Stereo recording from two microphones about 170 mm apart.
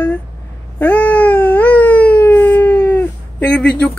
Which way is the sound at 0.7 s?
10° left (ahead or behind).